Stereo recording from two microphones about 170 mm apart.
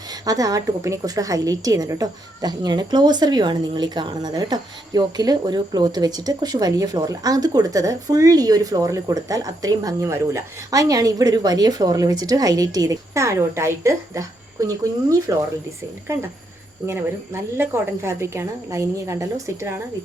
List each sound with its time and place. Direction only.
0.1 s a woman's voice: 20° right (ahead or behind)